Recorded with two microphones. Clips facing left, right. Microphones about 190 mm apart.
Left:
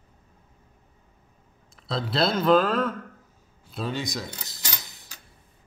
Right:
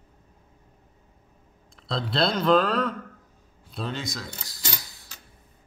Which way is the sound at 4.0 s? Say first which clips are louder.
Left 3 dB; 15° left (ahead or behind).